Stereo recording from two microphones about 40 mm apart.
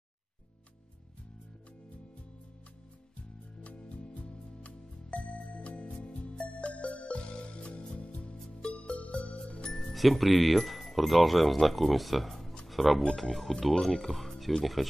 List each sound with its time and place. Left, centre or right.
3.6 s music: left
8.9 s music: left
9.8 s speech: centre
12.6 s music: centre
13.1 s speech: centre